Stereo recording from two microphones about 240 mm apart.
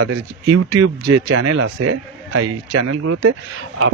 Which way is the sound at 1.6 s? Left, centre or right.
Right.